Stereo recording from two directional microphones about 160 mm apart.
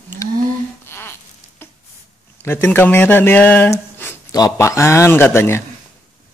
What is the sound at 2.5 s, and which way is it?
Speech, 15° left (ahead or behind).